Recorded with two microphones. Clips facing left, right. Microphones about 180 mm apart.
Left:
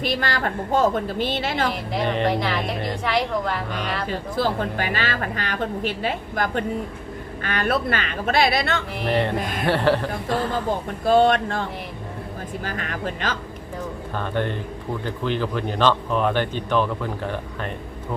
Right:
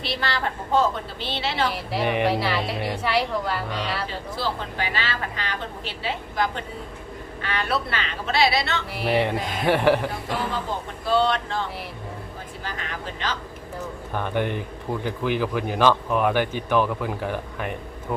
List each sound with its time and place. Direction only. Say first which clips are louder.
0.0 s a woman's voice: left 3 dB; 45° left (ahead or behind)
1.7 s a woman's voice: even; 5° right (ahead or behind)
4.4 s a woman's voice: left 5 dB; 50° left (ahead or behind)
9.0 s speech: right 1 dB; 10° right (ahead or behind)
11.0 s a woman's voice: left 5 dB; 50° left (ahead or behind)
14.1 s speech: right 1 dB; 15° right (ahead or behind)